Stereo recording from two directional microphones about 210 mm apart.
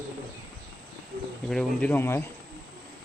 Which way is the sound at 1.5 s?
5° left (ahead or behind).